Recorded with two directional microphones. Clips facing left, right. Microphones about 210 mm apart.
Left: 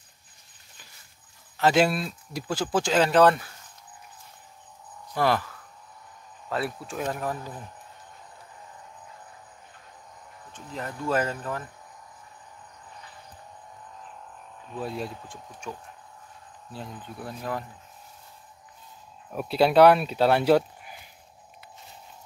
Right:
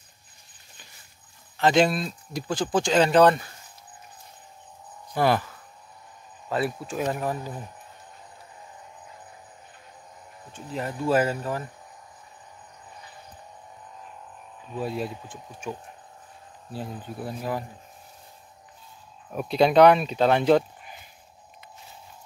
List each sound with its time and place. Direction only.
1.6 s speech: 5° left (ahead or behind)
5.1 s speech: centre (ahead or behind)
6.5 s speech: centre (ahead or behind)
11.1 s speech: 10° right (ahead or behind)
14.7 s speech: 5° right (ahead or behind)
16.8 s speech: 40° right (ahead or behind)
17.2 s speech: 5° right (ahead or behind)
19.3 s speech: 5° left (ahead or behind)